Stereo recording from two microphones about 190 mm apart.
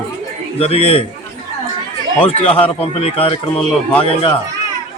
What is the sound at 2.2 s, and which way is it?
A man's voice, 30° left (ahead or behind).